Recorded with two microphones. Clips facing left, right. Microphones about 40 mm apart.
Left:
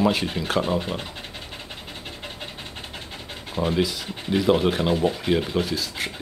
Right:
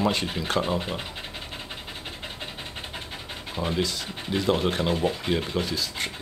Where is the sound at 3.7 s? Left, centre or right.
Centre.